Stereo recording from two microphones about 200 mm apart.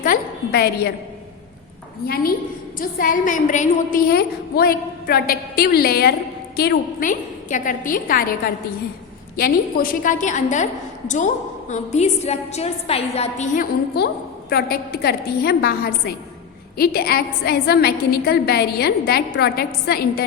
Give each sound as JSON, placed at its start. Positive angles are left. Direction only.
{"t": 0.0, "sound": "a sound", "side_deg": 45}
{"t": 2.7, "sound": "a woman's voice", "side_deg": 45}
{"t": 9.4, "sound": "a woman's voice", "side_deg": 45}
{"t": 11.7, "sound": "a woman's voice", "side_deg": 35}